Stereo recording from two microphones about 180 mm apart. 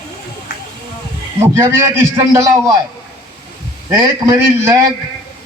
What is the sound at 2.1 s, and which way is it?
Speech, 15° right (ahead or behind).